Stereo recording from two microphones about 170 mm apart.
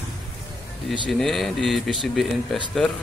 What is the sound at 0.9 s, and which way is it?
Speech, centre (ahead or behind).